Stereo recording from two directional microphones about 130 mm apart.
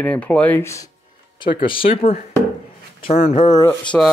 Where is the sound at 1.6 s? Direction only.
40° left (ahead or behind).